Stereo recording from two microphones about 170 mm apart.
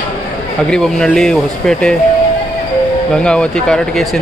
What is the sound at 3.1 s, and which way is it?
Speech, 5° left (ahead or behind).